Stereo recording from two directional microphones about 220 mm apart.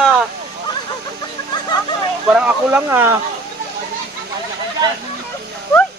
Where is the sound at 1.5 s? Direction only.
20° left (ahead or behind).